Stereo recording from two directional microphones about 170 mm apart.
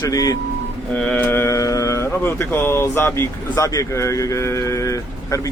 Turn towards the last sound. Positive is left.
turn(degrees=20)  # may be behind; listen again after turning